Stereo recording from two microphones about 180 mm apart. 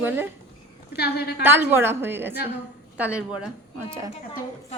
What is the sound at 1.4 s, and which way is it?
A woman's voice, 10° right (ahead or behind).